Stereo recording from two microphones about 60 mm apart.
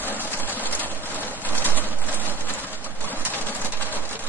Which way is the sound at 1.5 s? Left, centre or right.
Left.